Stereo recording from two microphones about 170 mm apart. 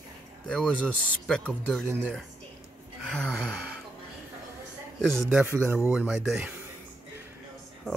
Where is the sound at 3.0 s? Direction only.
5° left (ahead or behind).